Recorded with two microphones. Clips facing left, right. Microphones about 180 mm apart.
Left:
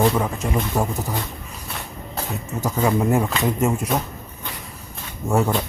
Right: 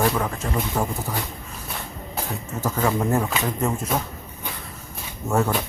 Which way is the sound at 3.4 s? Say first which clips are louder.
Left 4 dB; 15° left (ahead or behind).